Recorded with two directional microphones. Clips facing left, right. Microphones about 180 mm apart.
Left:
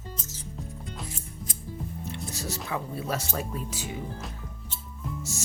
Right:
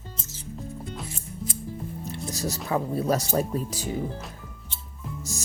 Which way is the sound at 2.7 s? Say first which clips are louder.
Right 8 dB; 40° right (ahead or behind).